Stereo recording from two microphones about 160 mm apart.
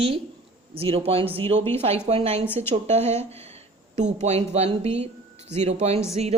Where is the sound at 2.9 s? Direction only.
45° right (ahead or behind).